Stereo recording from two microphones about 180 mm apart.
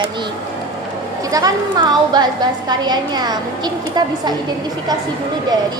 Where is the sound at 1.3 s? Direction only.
20° right (ahead or behind).